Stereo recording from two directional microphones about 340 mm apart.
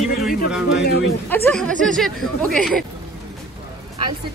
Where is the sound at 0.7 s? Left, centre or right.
Left.